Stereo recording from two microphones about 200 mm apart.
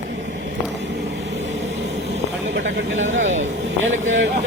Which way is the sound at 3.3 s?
35° right (ahead or behind).